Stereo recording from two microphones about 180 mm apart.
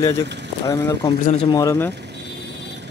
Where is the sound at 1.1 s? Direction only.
30° left (ahead or behind).